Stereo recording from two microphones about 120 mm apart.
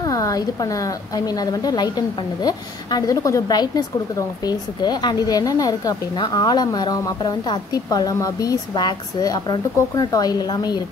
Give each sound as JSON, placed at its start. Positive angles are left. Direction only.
{"t": 0.0, "sound": "a woman's voice", "side_deg": 30}